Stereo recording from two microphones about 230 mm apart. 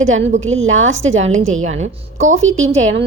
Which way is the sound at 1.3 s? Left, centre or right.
Right.